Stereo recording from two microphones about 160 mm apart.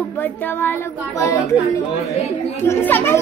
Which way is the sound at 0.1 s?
10° left (ahead or behind).